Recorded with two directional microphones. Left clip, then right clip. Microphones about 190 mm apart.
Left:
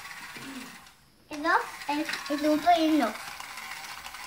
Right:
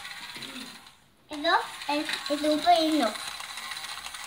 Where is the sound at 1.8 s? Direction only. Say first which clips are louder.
Right 2 dB; 5° right (ahead or behind).